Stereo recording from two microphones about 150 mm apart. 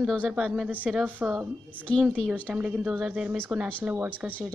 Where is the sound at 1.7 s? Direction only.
10° left (ahead or behind).